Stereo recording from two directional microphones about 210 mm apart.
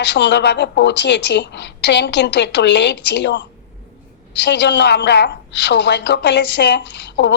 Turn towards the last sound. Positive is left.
turn(degrees=55)  # may be behind; listen again after turning